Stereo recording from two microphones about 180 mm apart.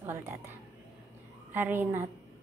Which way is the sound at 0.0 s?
10° right (ahead or behind).